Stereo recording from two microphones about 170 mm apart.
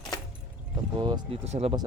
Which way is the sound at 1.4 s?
40° right (ahead or behind).